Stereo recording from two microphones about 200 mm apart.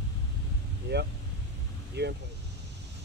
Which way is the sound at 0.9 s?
60° right (ahead or behind).